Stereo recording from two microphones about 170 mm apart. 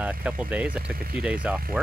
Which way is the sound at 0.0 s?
10° right (ahead or behind).